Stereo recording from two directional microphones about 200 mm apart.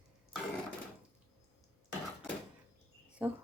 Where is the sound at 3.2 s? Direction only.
5° right (ahead or behind).